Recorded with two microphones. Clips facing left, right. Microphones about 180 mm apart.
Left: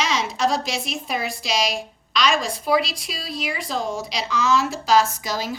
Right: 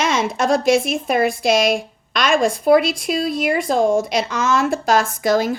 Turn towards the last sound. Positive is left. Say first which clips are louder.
# right 10 dB
turn(degrees=-55)  # may be behind; listen again after turning